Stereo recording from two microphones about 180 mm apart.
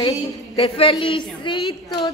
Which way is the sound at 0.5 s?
30° left (ahead or behind).